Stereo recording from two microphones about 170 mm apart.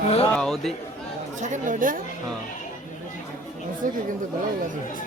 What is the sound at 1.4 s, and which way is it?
Speech, 45° right (ahead or behind).